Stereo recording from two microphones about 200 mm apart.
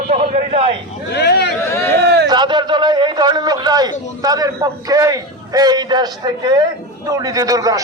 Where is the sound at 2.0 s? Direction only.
55° right (ahead or behind).